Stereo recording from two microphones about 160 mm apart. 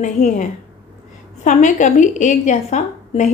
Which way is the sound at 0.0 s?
45° left (ahead or behind).